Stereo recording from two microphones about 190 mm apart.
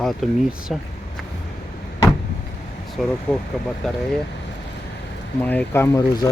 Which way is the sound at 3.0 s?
Centre (ahead or behind).